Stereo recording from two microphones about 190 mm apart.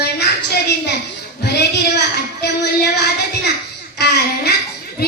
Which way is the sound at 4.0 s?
55° left (ahead or behind).